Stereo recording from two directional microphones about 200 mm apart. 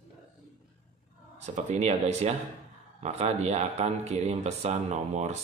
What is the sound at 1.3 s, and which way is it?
Speech, 35° right (ahead or behind).